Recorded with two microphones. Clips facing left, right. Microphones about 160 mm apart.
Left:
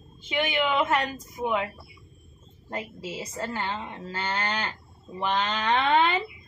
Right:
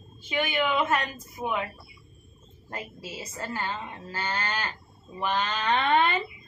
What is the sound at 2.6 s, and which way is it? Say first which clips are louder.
A woman's voice: left 4 dB; 15° left (ahead or behind).